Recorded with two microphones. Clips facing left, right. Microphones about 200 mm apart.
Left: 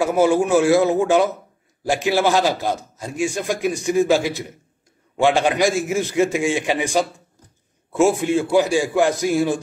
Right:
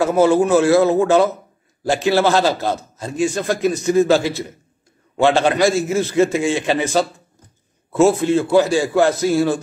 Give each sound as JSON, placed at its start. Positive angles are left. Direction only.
{"t": 0.0, "sound": "a man's voice", "side_deg": 15}